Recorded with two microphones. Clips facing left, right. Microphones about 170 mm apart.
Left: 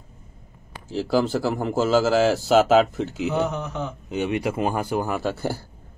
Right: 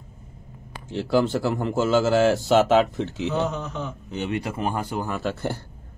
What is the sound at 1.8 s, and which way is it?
Speech, 35° left (ahead or behind).